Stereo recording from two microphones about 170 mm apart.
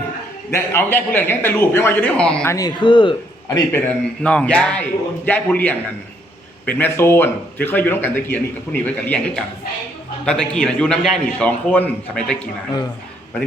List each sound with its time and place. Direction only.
0.5 s speech: 15° left (ahead or behind)
2.5 s a man's voice: 20° left (ahead or behind)
4.2 s a man's voice: 5° left (ahead or behind)